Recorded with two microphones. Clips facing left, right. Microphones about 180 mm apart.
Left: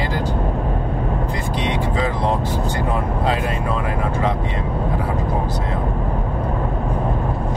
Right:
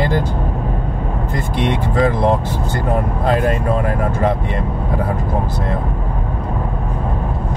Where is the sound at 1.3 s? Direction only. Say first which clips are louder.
Right 3 dB; 50° right (ahead or behind).